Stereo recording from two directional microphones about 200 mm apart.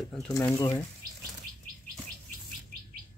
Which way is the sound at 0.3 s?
15° left (ahead or behind).